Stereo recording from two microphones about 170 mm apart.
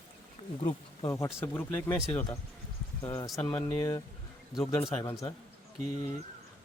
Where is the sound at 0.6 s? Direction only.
20° left (ahead or behind).